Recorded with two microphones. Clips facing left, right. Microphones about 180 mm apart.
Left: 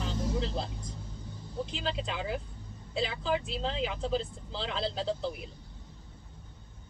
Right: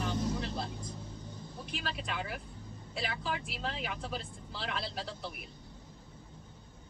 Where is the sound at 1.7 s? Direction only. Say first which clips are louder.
Left 1 dB; 25° left (ahead or behind).